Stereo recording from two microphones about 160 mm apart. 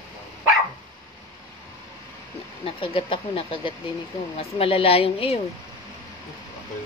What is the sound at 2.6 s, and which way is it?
Speech, 35° left (ahead or behind).